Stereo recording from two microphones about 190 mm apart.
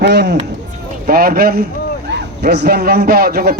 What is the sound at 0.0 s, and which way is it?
Speech, 60° right (ahead or behind).